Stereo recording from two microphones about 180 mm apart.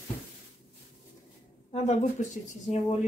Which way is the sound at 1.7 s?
35° left (ahead or behind).